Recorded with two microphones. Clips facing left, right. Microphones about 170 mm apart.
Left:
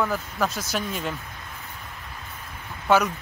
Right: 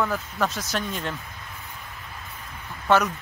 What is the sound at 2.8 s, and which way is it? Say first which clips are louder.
Speech: even; 5° left (ahead or behind).